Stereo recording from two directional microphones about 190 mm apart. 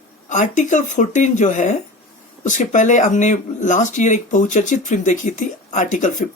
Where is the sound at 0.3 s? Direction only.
40° left (ahead or behind).